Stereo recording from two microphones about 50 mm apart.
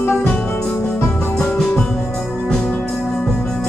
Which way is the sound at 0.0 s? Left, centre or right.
Left.